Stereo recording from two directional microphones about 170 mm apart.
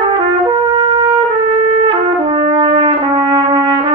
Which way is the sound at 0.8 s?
30° right (ahead or behind).